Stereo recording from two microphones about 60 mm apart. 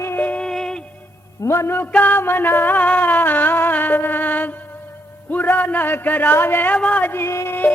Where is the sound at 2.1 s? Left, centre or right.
Left.